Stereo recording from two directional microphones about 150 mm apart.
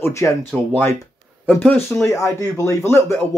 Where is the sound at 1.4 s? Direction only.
10° left (ahead or behind).